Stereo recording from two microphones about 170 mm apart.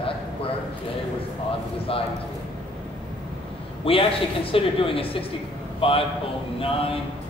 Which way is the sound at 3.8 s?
30° left (ahead or behind).